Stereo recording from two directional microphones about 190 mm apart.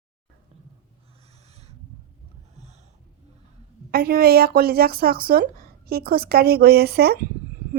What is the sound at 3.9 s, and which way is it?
A woman's voice, 55° right (ahead or behind).